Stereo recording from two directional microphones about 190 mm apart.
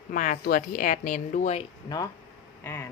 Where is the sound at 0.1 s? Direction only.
45° left (ahead or behind).